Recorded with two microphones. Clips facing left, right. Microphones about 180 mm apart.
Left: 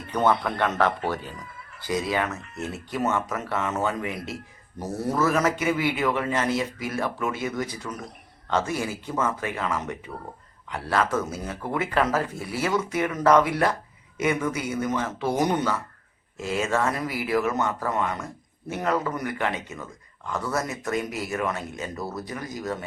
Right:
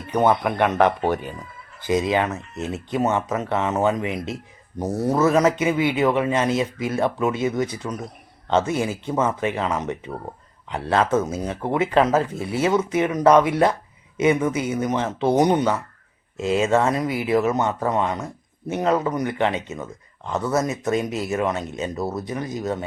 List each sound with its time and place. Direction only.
0.1 s speech: 15° right (ahead or behind)